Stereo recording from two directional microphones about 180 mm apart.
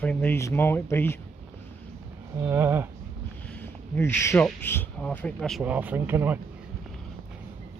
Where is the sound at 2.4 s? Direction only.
15° right (ahead or behind).